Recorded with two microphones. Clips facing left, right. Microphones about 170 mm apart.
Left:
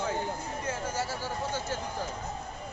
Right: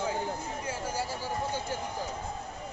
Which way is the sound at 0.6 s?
10° right (ahead or behind).